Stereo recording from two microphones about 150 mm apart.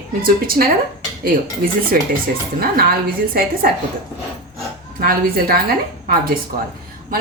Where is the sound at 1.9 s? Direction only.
80° right.